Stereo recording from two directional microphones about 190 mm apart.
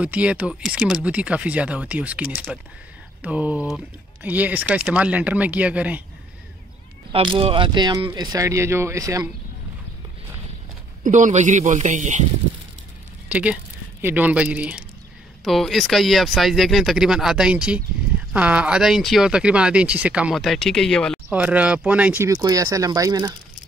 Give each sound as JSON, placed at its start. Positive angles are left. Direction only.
{"t": 0.0, "sound": "speech", "side_deg": -5}
{"t": 7.1, "sound": "speech", "side_deg": -25}
{"t": 11.1, "sound": "speech", "side_deg": -40}
{"t": 13.3, "sound": "speech", "side_deg": -5}
{"t": 21.3, "sound": "speech", "side_deg": -5}